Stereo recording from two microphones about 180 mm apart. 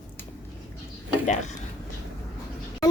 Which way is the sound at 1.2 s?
40° left (ahead or behind).